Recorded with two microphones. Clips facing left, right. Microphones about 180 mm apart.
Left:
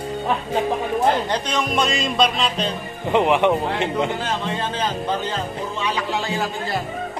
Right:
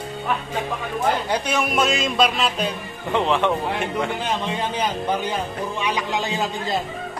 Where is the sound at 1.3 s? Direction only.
10° right (ahead or behind).